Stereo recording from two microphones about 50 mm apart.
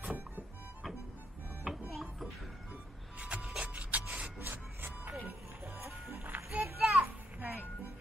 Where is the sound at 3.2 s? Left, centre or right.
Right.